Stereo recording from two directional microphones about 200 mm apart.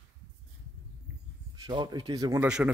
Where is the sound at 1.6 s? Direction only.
25° right (ahead or behind).